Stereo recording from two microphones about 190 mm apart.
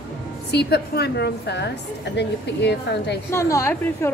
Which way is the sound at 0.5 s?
60° left (ahead or behind).